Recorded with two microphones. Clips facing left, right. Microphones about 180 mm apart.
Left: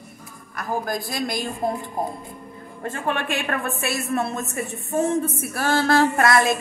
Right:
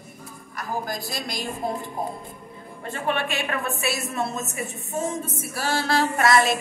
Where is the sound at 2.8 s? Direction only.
45° left (ahead or behind).